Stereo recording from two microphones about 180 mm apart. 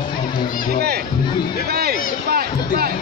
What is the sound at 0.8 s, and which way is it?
Speech, 60° right (ahead or behind).